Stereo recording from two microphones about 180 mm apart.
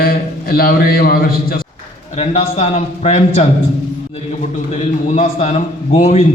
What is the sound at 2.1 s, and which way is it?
A man's voice, 35° left (ahead or behind).